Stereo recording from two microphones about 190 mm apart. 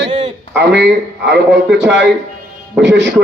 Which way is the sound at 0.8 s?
65° right (ahead or behind).